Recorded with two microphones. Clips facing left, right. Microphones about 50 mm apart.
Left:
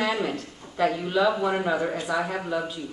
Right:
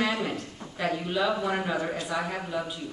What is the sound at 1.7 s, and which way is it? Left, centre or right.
Speech, centre.